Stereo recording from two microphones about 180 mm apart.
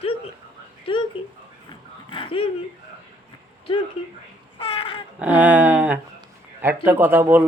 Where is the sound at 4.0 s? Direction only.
30° left (ahead or behind).